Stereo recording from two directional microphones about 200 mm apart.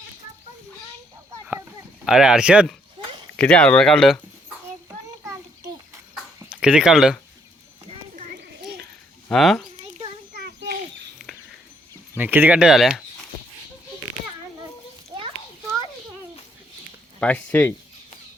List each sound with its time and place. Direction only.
2.0 s speech: 5° right (ahead or behind)
4.9 s children playing: 15° right (ahead or behind)
6.4 s speech: 5° right (ahead or behind)
7.9 s a sound: 35° right (ahead or behind)
8.4 s children playing: 55° right (ahead or behind)
9.3 s speech: centre (ahead or behind)
10.3 s a sound: 55° right (ahead or behind)
12.1 s speech: 10° right (ahead or behind)
17.2 s speech: 5° left (ahead or behind)